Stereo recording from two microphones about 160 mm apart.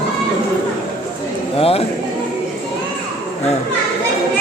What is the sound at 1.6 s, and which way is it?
Speech, 35° left (ahead or behind).